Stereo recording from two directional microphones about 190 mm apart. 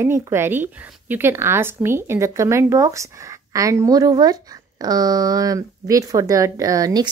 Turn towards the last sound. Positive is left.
turn(degrees=-20)  # may be behind; listen again after turning